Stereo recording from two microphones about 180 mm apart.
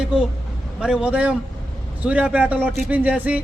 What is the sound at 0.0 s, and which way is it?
A man's voice, 5° right (ahead or behind).